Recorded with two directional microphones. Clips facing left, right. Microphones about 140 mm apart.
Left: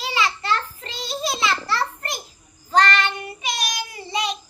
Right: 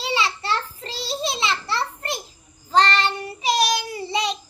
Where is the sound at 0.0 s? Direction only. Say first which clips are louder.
Even; 25° right (ahead or behind).